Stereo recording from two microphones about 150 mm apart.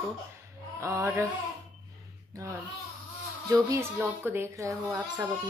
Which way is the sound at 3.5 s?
15° right (ahead or behind).